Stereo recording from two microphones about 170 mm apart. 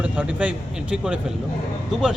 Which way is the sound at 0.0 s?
10° right (ahead or behind).